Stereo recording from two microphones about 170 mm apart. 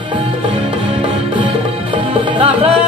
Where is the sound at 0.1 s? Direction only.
30° right (ahead or behind).